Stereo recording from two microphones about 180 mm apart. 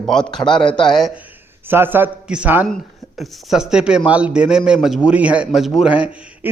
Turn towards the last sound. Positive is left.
turn(degrees=-10)  # may be behind; listen again after turning